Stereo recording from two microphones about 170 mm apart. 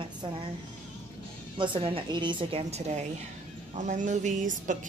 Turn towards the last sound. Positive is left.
turn(degrees=-45)  # may be behind; listen again after turning